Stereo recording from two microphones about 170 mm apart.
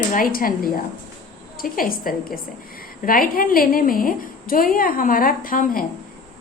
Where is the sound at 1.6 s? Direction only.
55° left (ahead or behind).